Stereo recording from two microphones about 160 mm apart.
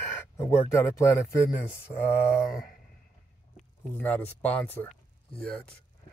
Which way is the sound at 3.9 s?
10° left (ahead or behind).